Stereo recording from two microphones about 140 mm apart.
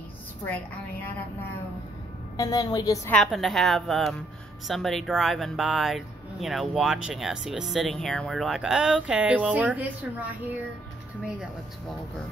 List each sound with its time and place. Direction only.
0.5 s a woman's voice: 10° left (ahead or behind)
2.3 s a woman's voice: 25° left (ahead or behind)
3.3 s speech: centre (ahead or behind)